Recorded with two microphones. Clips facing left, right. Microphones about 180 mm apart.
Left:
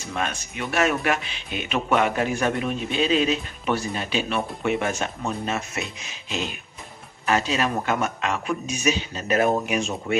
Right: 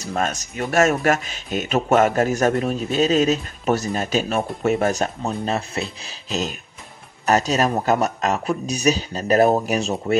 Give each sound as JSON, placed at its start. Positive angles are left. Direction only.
{"t": 0.0, "sound": "a man's voice", "side_deg": -40}